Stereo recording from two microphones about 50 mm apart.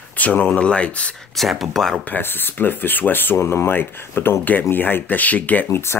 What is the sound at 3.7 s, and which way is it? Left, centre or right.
Speech, left.